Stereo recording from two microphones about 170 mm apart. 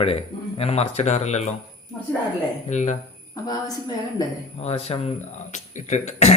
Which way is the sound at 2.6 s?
45° left (ahead or behind).